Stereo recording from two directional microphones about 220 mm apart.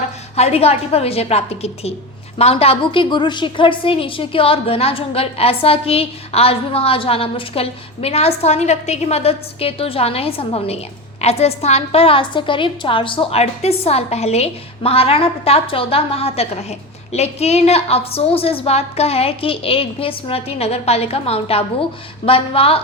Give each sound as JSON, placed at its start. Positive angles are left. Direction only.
{"t": 0.3, "sound": "a woman's voice", "side_deg": 30}